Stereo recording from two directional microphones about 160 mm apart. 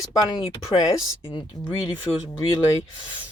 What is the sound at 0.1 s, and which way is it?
Speech, 25° left (ahead or behind).